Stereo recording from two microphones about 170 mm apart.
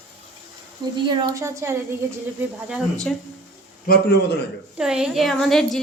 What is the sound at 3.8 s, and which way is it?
Speech, 65° left (ahead or behind).